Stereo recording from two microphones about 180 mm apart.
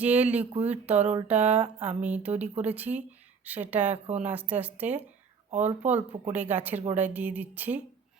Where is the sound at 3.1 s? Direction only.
10° right (ahead or behind).